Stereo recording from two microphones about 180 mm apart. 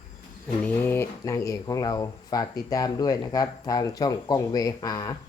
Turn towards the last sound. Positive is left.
turn(degrees=20)  # may be behind; listen again after turning